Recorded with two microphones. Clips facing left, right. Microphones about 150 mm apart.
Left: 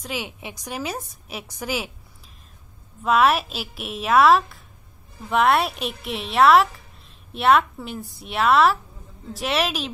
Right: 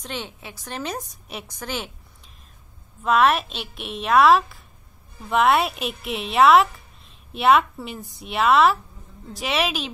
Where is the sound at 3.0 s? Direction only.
Centre (ahead or behind).